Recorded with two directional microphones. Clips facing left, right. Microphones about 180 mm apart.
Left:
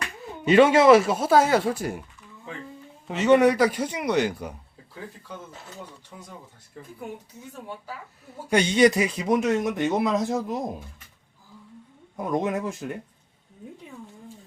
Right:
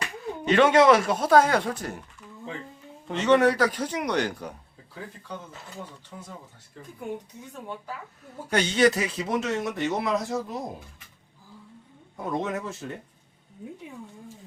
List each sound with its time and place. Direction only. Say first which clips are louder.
0.4 s speech: left 2 dB; 10° left (ahead or behind)
3.1 s speech: left 2 dB; 10° left (ahead or behind)
8.4 s speech: left 3 dB; 10° left (ahead or behind)
12.1 s speech: left 3 dB; 15° left (ahead or behind)